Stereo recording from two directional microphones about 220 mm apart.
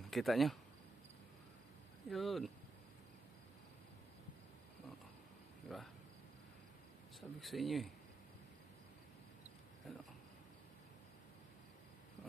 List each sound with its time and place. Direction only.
0.1 s speech: centre (ahead or behind)
2.0 s speech: centre (ahead or behind)
5.7 s speech: centre (ahead or behind)
7.2 s speech: centre (ahead or behind)
9.9 s a sound: centre (ahead or behind)